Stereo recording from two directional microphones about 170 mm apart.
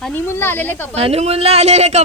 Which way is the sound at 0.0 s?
10° left (ahead or behind).